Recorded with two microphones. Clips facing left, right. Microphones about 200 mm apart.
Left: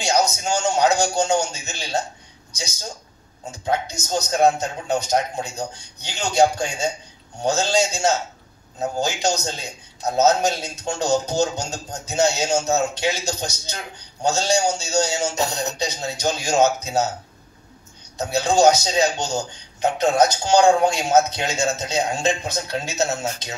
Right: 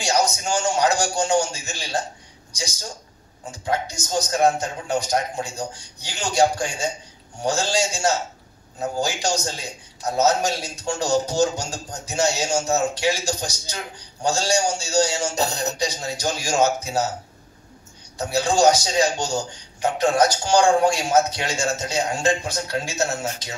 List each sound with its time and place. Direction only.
0.0 s a man's voice: 25° left (ahead or behind)
3.6 s a man's voice: 25° left (ahead or behind)
18.1 s a man's voice: 20° left (ahead or behind)